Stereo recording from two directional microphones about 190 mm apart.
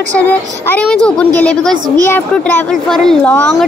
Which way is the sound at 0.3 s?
10° left (ahead or behind).